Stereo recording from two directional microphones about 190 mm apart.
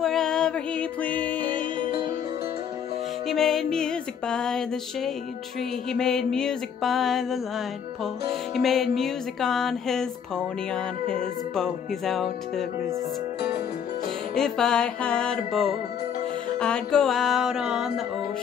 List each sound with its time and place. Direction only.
0.0 s music: centre (ahead or behind)
1.5 s music: 25° right (ahead or behind)
3.3 s music: centre (ahead or behind)
8.5 s music: centre (ahead or behind)
14.3 s music: 5° left (ahead or behind)